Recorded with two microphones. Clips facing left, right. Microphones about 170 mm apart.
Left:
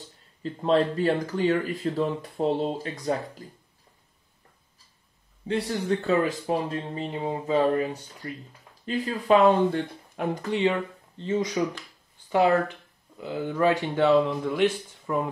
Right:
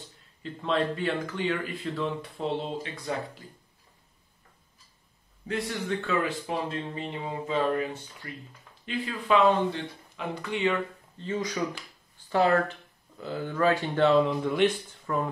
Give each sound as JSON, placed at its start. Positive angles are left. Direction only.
{"t": 0.4, "sound": "speech", "side_deg": 40}
{"t": 5.5, "sound": "speech", "side_deg": 35}
{"t": 10.7, "sound": "speech", "side_deg": 25}
{"t": 15.1, "sound": "speech", "side_deg": 15}